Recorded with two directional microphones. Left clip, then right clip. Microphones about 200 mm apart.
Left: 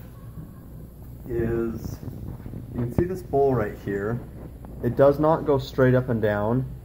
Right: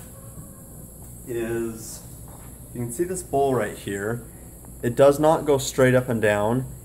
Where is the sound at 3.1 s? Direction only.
20° right (ahead or behind).